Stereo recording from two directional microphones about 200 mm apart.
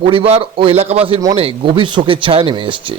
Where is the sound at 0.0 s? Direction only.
25° right (ahead or behind).